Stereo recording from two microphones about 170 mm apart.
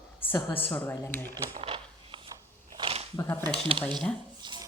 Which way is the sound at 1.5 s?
35° right (ahead or behind).